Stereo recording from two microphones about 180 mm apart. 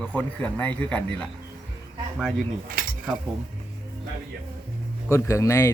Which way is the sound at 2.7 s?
55° right (ahead or behind).